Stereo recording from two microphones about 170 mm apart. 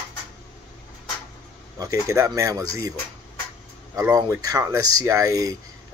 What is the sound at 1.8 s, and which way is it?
Speech, 20° right (ahead or behind).